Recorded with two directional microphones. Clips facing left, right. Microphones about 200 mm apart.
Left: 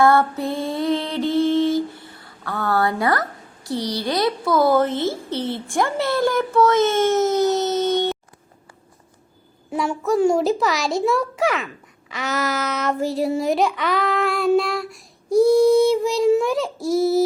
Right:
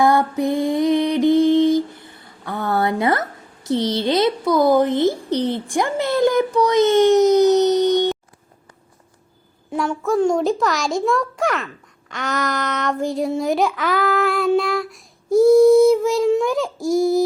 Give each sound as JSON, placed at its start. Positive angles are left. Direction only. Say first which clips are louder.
{"t": 0.0, "sound": "mantra", "louder": "even", "side_deg": -15}
{"t": 9.7, "sound": "a child's voice", "louder": "right 1 dB", "side_deg": 0}